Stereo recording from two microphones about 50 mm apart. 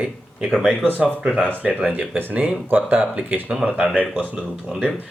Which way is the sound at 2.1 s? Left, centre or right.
Right.